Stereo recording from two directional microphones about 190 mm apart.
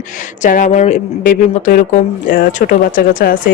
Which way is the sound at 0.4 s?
40° left (ahead or behind).